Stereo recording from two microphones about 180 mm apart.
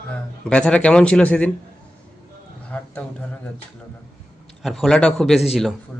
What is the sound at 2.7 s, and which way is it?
Speech, 5° left (ahead or behind).